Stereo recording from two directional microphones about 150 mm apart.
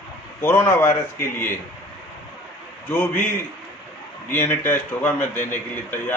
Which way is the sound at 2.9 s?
15° left (ahead or behind).